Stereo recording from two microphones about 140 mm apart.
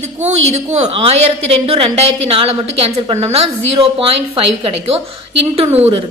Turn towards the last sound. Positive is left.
turn(degrees=-50)  # may be behind; listen again after turning